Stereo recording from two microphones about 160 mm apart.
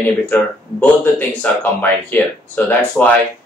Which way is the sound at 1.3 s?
10° left (ahead or behind).